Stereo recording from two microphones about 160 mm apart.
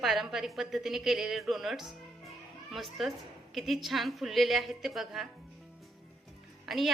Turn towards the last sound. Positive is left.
turn(degrees=0)  # may be behind; listen again after turning